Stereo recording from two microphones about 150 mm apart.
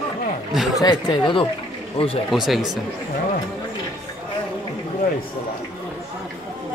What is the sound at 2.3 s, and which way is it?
Speech, centre (ahead or behind).